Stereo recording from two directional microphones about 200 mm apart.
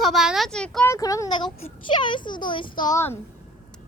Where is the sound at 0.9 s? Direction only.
15° left (ahead or behind).